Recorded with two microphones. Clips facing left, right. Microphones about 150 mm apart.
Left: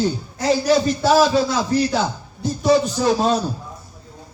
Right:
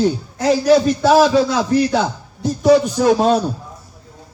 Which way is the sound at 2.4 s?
70° right (ahead or behind).